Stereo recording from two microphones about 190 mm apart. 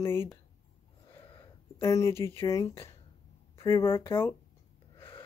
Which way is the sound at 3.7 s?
15° left (ahead or behind).